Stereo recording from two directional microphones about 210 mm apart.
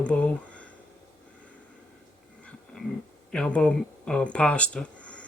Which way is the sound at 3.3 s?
5° left (ahead or behind).